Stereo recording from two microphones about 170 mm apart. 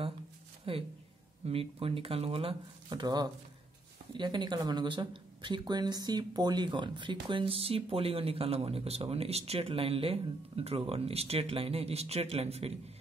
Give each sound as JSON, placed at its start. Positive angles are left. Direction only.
{"t": 0.7, "sound": "speech", "side_deg": -35}